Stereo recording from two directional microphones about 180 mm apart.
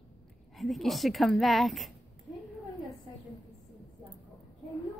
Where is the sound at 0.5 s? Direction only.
Centre (ahead or behind).